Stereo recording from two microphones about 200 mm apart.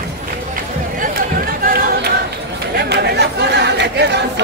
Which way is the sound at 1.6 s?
45° right (ahead or behind).